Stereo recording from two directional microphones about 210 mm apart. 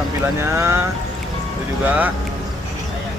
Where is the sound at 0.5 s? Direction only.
15° right (ahead or behind).